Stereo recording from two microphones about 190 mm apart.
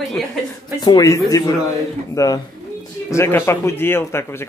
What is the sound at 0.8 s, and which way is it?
Speech, 20° left (ahead or behind).